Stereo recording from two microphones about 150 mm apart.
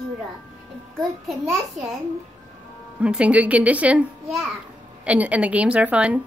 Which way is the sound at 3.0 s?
5° right (ahead or behind).